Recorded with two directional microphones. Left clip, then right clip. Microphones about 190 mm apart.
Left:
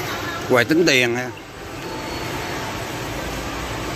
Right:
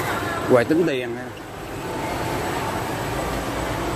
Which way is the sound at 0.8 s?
15° left (ahead or behind).